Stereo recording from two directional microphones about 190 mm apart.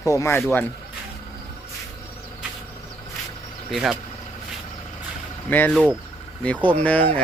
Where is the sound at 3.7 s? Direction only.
Centre (ahead or behind).